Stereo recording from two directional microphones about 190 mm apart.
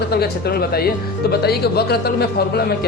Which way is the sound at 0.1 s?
55° left (ahead or behind).